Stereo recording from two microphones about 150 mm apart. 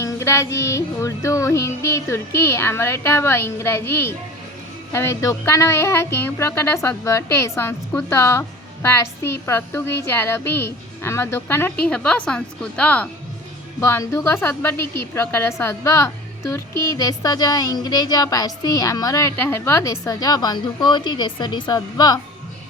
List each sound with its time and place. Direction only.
0.0 s a woman's voice: 20° left (ahead or behind)